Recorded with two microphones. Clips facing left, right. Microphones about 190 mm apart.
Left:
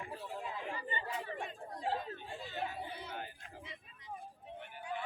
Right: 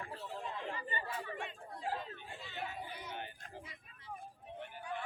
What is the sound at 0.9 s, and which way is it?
Chatter, 20° left (ahead or behind).